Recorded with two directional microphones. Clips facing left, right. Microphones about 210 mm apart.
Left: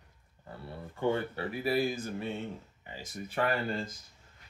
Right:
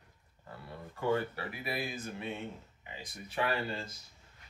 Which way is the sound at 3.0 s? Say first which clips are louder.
Left 3 dB; 50° left (ahead or behind).